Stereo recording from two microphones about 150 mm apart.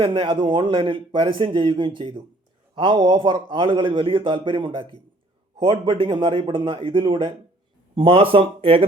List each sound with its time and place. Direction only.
0.0 s a man's voice: 35° right (ahead or behind)